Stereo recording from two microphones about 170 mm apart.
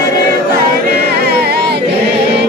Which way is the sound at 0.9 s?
70° right (ahead or behind).